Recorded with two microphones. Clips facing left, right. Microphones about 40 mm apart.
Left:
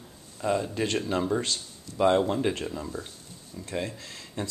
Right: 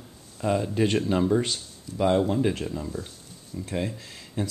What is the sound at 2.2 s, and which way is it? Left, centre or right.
Speech, centre.